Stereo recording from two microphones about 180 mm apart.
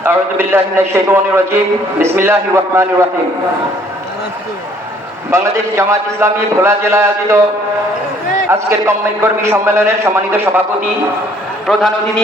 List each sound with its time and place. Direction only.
0.0 s a man's voice: 15° right (ahead or behind)
5.3 s a man's voice: 15° right (ahead or behind)
8.4 s a man's voice: 15° right (ahead or behind)
11.6 s a man's voice: centre (ahead or behind)